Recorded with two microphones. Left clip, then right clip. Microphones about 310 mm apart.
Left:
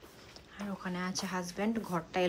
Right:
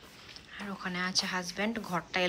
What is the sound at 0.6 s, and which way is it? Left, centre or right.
A woman's voice, centre.